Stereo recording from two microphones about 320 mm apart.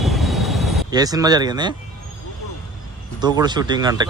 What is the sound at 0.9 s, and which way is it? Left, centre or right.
Speech, centre.